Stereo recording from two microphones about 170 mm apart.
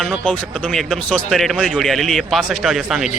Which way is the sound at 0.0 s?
5° left (ahead or behind).